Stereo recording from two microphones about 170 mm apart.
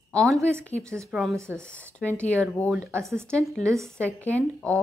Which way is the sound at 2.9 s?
15° right (ahead or behind).